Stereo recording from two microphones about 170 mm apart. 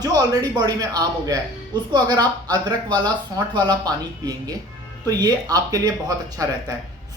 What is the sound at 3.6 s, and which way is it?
Speech, 20° right (ahead or behind).